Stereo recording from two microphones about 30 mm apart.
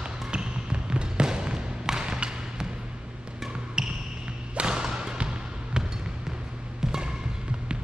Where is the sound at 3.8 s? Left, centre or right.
Right.